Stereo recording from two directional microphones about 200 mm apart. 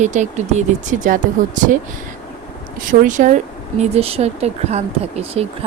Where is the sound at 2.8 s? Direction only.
40° right (ahead or behind).